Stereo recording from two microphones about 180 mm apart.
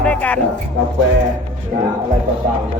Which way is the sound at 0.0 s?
10° left (ahead or behind).